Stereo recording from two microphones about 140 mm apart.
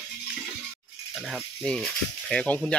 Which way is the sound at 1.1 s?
Centre (ahead or behind).